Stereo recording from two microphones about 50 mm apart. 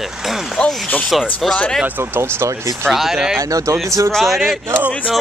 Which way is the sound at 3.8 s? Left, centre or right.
Right.